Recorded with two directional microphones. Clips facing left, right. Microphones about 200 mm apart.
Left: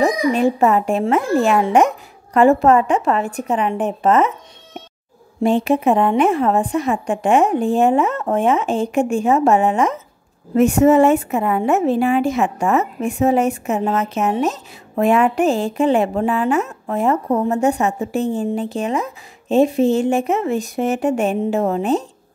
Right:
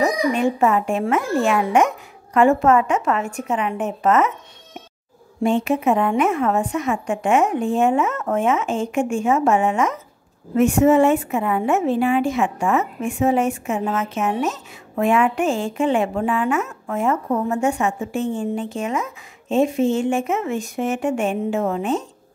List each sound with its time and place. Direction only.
0.0 s a woman's voice: 35° left (ahead or behind)
5.4 s a woman's voice: 35° left (ahead or behind)